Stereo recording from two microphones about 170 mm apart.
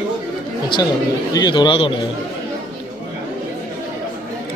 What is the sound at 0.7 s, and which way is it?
Speech, 25° left (ahead or behind).